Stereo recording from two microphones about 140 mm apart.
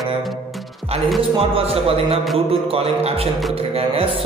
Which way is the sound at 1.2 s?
40° right (ahead or behind).